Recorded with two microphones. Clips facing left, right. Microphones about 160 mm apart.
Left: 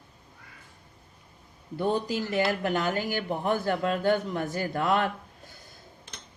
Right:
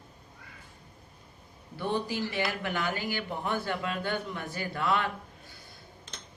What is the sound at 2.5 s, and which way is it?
A man's voice, 50° left (ahead or behind).